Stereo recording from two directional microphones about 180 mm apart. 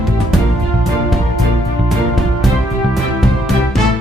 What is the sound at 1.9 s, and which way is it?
Music, centre (ahead or behind).